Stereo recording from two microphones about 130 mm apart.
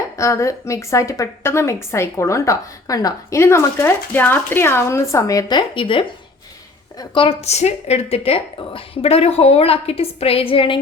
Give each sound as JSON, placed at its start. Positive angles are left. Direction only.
{"t": 0.2, "sound": "a woman's voice", "side_deg": 25}
{"t": 7.4, "sound": "a woman's voice", "side_deg": 55}